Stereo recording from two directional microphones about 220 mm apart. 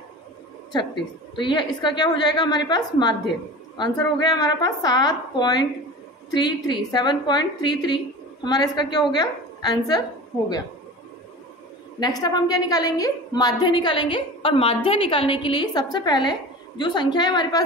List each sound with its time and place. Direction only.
1.3 s a woman's voice: 20° left (ahead or behind)
12.0 s a woman's voice: 20° left (ahead or behind)